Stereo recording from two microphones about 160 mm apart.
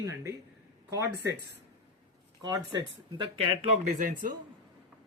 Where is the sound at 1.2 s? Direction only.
90° right.